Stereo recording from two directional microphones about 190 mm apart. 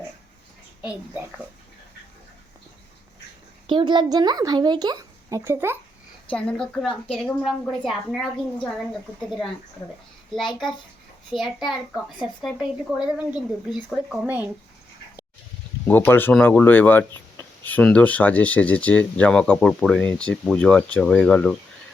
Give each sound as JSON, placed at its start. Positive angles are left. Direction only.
{"t": 3.7, "sound": "speech", "side_deg": -25}
{"t": 6.3, "sound": "speech", "side_deg": 5}
{"t": 11.3, "sound": "speech", "side_deg": 0}
{"t": 15.9, "sound": "speech", "side_deg": 10}